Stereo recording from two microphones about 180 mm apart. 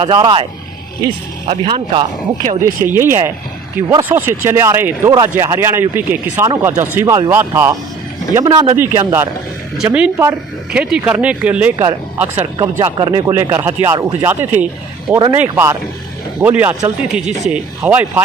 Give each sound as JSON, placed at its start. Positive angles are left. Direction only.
{"t": 0.0, "sound": "speech", "side_deg": -25}
{"t": 2.6, "sound": "speech", "side_deg": -15}
{"t": 12.8, "sound": "speech", "side_deg": -25}
{"t": 13.3, "sound": "speech", "side_deg": -15}